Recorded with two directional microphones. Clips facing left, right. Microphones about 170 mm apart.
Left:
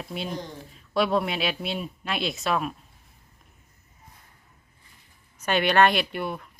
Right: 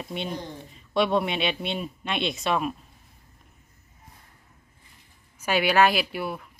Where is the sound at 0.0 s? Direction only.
Centre (ahead or behind).